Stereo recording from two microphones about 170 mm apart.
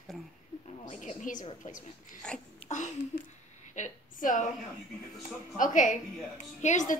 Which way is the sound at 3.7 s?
50° left (ahead or behind).